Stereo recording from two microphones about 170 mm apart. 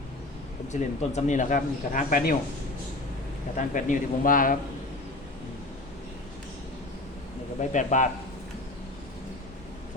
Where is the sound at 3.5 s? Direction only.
50° left (ahead or behind).